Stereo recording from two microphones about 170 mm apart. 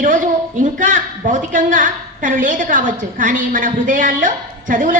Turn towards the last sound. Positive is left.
turn(degrees=-50)  # may be behind; listen again after turning